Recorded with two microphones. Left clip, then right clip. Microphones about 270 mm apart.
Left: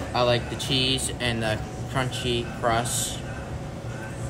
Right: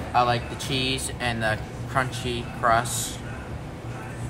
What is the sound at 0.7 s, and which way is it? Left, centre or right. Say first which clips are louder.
A man's voice: left 3 dB; centre.